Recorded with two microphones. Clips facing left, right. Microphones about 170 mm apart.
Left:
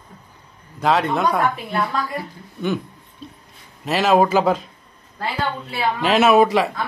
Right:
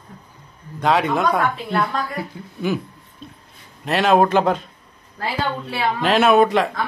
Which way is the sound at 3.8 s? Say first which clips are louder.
Even; centre (ahead or behind).